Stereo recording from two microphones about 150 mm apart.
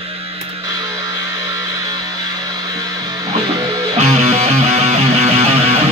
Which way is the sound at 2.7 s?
25° right (ahead or behind).